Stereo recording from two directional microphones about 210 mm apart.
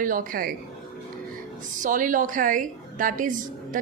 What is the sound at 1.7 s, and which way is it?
A woman's voice, 40° right (ahead or behind).